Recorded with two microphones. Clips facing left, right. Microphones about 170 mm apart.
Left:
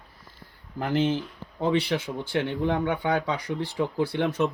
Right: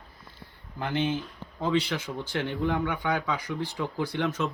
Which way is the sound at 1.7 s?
60° left (ahead or behind).